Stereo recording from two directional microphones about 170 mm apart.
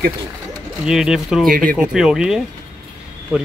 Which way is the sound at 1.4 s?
55° right (ahead or behind).